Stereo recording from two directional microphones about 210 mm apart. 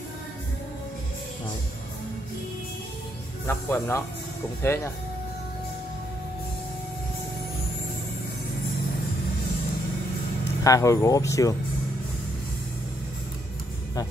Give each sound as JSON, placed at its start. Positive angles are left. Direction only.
{"t": 3.4, "sound": "speech", "side_deg": 10}
{"t": 10.6, "sound": "speech", "side_deg": 15}